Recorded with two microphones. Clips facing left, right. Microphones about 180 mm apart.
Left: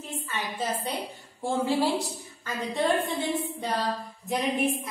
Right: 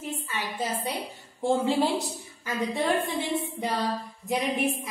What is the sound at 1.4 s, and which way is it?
Speech, 20° right (ahead or behind).